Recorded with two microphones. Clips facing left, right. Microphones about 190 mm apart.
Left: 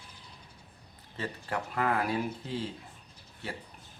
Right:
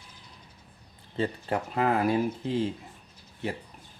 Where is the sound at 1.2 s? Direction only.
25° right (ahead or behind).